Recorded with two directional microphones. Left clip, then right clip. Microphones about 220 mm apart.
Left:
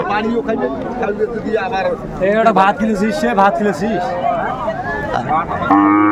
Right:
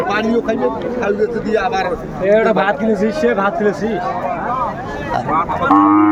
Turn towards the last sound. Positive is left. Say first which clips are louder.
# right 1 dB
turn(degrees=45)  # may be behind; listen again after turning